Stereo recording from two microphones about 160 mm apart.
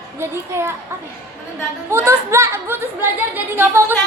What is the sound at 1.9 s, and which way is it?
A woman's voice, 20° right (ahead or behind).